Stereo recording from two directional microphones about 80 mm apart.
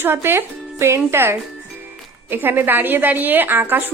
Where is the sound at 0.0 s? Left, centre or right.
Right.